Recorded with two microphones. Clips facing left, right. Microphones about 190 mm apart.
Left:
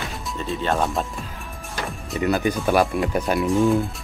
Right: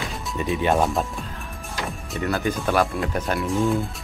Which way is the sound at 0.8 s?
Centre (ahead or behind).